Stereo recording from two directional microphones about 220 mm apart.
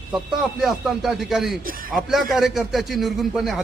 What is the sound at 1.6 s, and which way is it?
Speech, 40° right (ahead or behind).